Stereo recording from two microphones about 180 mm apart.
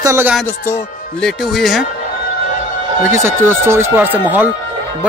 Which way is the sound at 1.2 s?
Centre (ahead or behind).